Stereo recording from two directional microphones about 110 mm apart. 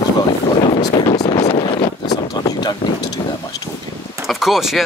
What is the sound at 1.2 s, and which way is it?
Wind noise, 35° left (ahead or behind).